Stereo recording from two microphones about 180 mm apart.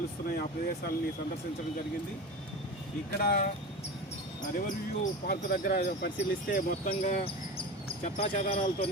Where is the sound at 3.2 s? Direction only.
55° left (ahead or behind).